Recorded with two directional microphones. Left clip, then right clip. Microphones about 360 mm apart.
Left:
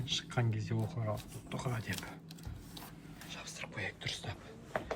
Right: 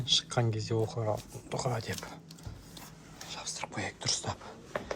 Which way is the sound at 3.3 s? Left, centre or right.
Centre.